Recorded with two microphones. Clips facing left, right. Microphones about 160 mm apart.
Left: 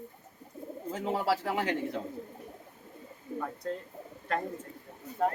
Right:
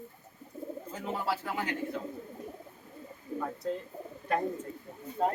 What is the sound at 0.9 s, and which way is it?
Speech, 85° left.